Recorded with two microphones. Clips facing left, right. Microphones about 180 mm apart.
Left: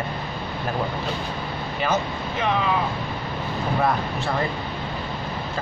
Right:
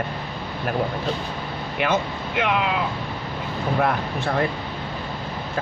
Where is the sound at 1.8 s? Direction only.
65° right (ahead or behind).